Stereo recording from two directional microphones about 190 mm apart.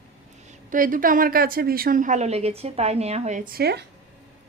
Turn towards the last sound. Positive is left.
turn(degrees=-60)  # may be behind; listen again after turning